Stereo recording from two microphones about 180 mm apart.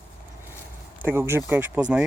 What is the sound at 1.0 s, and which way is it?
Speech, 10° right (ahead or behind).